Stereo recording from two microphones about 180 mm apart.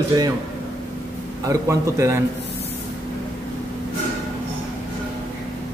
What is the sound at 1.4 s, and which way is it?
Speech, 15° right (ahead or behind).